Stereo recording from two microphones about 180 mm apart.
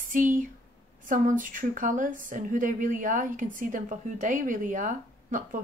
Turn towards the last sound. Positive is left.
turn(degrees=-45)  # may be behind; listen again after turning